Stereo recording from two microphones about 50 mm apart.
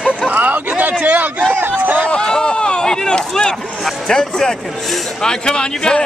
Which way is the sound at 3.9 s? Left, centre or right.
Centre.